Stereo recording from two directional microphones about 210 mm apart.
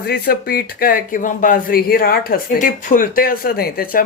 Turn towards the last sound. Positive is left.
turn(degrees=45)  # may be behind; listen again after turning